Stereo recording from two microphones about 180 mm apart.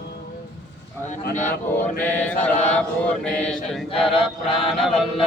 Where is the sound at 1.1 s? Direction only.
40° left (ahead or behind).